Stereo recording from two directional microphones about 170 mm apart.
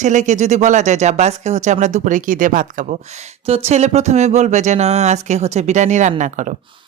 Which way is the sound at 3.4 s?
35° right (ahead or behind).